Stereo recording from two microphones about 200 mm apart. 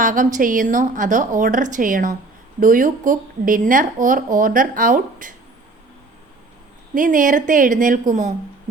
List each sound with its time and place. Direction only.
0.0 s speech: 40° right (ahead or behind)
6.9 s speech: 40° right (ahead or behind)